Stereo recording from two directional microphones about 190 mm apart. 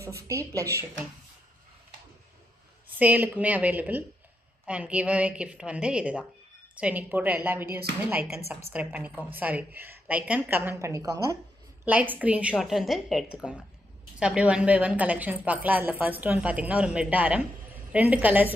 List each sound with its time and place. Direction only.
0.0 s a woman's voice: 15° right (ahead or behind)
2.9 s a woman's voice: 10° right (ahead or behind)
8.7 s a woman's voice: 5° right (ahead or behind)